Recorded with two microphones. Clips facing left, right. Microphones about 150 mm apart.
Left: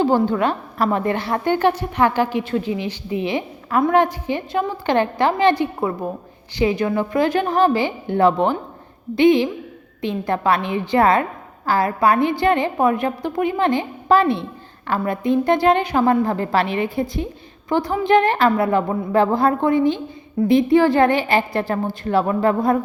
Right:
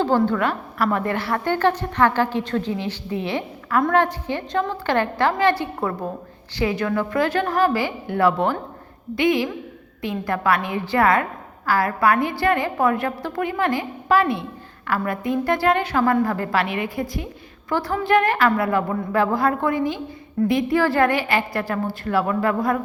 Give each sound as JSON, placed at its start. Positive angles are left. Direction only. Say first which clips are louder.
{"t": 0.0, "sound": "a woman's voice", "louder": "left 2 dB", "side_deg": 15}